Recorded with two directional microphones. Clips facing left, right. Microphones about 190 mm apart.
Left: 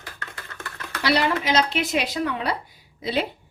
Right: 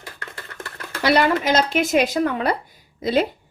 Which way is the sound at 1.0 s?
50° right (ahead or behind).